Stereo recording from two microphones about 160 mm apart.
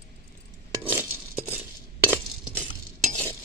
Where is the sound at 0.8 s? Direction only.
15° right (ahead or behind).